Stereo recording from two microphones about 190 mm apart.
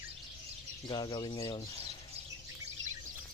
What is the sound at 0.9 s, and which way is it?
Speech, 20° left (ahead or behind).